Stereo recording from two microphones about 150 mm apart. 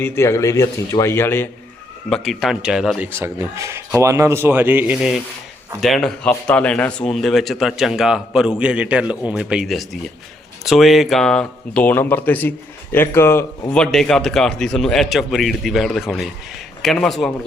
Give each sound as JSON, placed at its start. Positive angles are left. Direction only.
{"t": 0.0, "sound": "speech", "side_deg": 20}
{"t": 2.0, "sound": "speech", "side_deg": 5}
{"t": 3.2, "sound": "a man's voice", "side_deg": -15}
{"t": 4.9, "sound": "speech", "side_deg": 0}
{"t": 13.7, "sound": "speech", "side_deg": 5}